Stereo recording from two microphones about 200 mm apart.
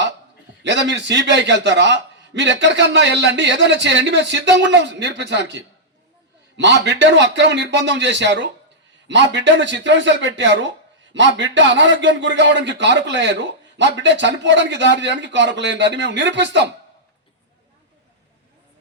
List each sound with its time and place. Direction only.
0.6 s a man's voice: 60° right (ahead or behind)